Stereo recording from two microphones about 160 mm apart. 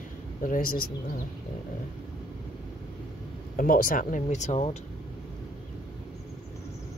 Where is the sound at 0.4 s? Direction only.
60° left (ahead or behind).